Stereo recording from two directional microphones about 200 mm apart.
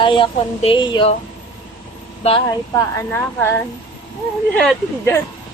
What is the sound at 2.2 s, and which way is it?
Speech, 25° left (ahead or behind).